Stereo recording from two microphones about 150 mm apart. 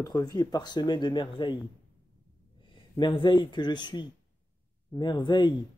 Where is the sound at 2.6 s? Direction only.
30° left (ahead or behind).